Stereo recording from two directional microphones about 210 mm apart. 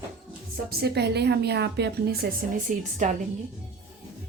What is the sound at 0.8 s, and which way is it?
Speech, 50° right (ahead or behind).